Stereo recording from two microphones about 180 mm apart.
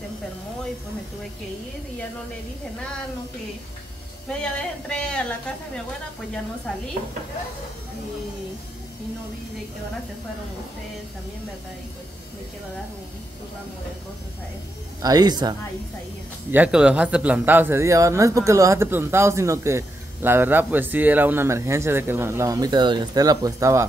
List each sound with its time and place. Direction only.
4.3 s speech: 5° left (ahead or behind)
15.0 s speech: 20° right (ahead or behind)
16.5 s speech: 5° right (ahead or behind)